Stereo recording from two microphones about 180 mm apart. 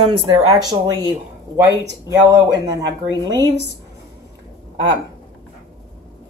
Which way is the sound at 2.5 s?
20° right (ahead or behind).